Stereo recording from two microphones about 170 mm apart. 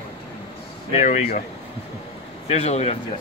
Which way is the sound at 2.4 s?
35° left (ahead or behind).